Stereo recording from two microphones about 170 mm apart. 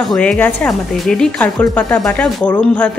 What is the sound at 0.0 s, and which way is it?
Speech, 5° left (ahead or behind).